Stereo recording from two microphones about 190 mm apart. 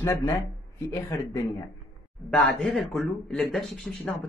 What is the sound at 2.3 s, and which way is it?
Speech, centre (ahead or behind).